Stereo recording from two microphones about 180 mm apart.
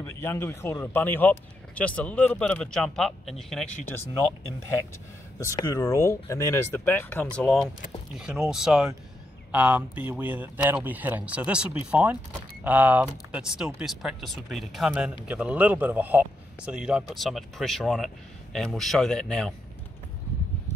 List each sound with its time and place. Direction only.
0.0 s speech: 15° left (ahead or behind)
5.4 s a man's voice: 20° left (ahead or behind)